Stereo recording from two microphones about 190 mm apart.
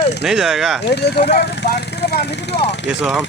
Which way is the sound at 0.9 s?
60° left (ahead or behind).